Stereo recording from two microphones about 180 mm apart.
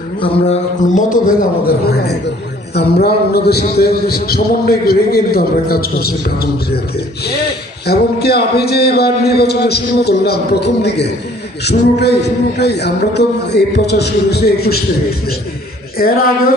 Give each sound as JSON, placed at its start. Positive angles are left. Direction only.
{"t": 0.2, "sound": "a man's voice", "side_deg": 40}
{"t": 2.7, "sound": "a man's voice", "side_deg": 65}
{"t": 7.9, "sound": "a man's voice", "side_deg": 65}
{"t": 16.0, "sound": "a man's voice", "side_deg": 55}